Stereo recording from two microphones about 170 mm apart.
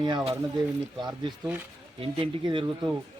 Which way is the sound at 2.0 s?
30° right (ahead or behind).